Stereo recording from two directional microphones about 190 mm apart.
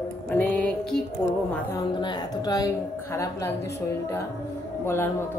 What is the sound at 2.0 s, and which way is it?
A woman's voice, 25° left (ahead or behind).